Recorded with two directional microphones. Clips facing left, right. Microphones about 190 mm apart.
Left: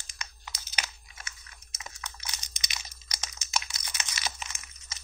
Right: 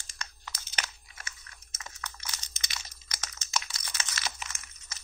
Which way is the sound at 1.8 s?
15° left (ahead or behind).